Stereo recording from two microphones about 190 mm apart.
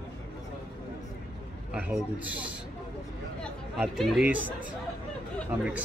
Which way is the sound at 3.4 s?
Centre (ahead or behind).